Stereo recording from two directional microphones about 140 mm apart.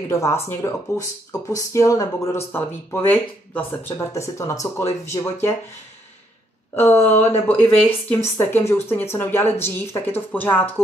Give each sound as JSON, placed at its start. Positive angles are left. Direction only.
{"t": 0.1, "sound": "speech", "side_deg": 20}
{"t": 6.9, "sound": "speech", "side_deg": 15}